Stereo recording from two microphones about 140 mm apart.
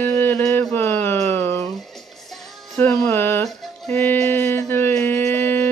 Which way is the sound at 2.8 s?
15° left (ahead or behind).